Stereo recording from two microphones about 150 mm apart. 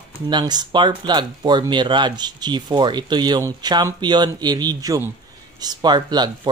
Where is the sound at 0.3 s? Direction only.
30° right (ahead or behind).